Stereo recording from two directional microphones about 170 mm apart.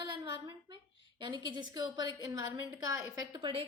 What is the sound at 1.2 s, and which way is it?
A woman's voice, 25° right (ahead or behind).